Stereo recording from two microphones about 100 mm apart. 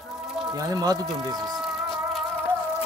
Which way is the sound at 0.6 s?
35° right (ahead or behind).